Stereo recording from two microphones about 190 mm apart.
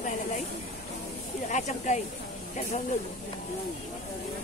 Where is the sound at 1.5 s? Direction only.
40° left (ahead or behind).